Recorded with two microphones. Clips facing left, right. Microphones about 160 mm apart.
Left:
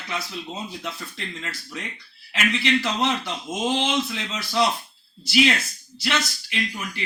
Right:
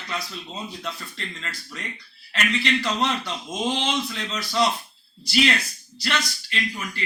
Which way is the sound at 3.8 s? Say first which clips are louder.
Left 2 dB; 15° left (ahead or behind).